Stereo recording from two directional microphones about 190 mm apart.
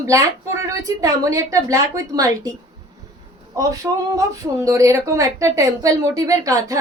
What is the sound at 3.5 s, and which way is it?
Speech, 15° right (ahead or behind).